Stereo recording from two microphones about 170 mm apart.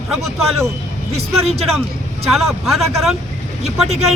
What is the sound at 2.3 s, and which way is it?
Speech, centre (ahead or behind).